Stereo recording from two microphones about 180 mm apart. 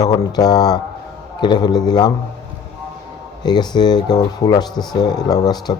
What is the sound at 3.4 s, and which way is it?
Speech, 25° left (ahead or behind).